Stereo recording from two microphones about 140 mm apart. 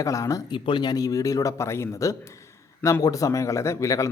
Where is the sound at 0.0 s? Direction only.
25° left (ahead or behind).